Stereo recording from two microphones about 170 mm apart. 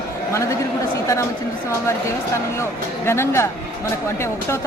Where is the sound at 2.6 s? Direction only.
15° left (ahead or behind).